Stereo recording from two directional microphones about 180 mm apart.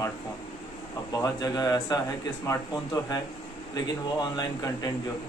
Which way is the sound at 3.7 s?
20° left (ahead or behind).